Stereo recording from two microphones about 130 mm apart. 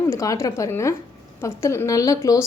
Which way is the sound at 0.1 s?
25° left (ahead or behind).